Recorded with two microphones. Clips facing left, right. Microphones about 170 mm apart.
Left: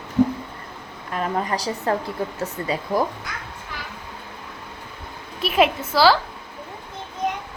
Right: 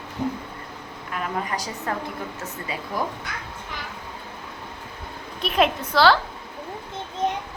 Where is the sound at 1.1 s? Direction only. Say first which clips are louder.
Left 4 dB; 35° left (ahead or behind).